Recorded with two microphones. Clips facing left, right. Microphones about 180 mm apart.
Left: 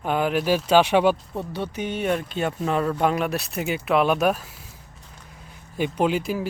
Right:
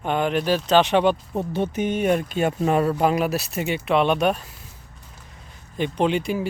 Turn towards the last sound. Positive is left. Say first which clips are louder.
# right 1 dB
turn(degrees=0)  # may be behind; listen again after turning